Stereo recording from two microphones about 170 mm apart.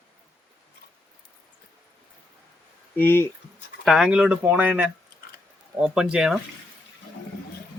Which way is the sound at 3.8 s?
Centre (ahead or behind).